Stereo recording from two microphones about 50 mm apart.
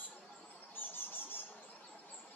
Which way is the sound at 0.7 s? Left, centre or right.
Left.